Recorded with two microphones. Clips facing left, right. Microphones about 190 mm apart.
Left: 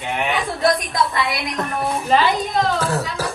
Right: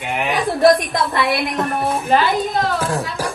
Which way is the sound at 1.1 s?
60° right (ahead or behind).